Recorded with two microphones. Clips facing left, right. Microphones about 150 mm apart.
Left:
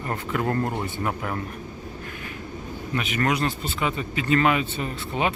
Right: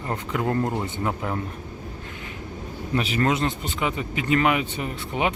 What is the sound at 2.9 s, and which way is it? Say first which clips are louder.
Speech: right 2 dB; 30° right (ahead or behind).